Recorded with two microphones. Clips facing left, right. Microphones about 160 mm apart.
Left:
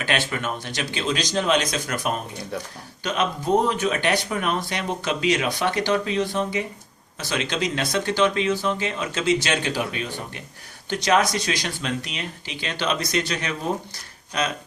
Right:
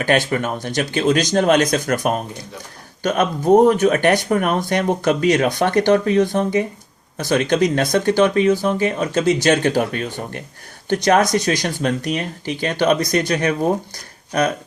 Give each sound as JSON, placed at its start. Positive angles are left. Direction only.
{"t": 0.3, "sound": "speech", "side_deg": -45}